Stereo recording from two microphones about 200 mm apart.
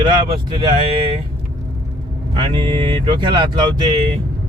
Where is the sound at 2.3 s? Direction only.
25° right (ahead or behind).